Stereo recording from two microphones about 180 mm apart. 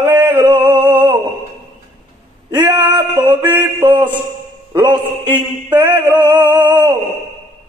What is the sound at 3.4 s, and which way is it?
Mantra, 10° right (ahead or behind).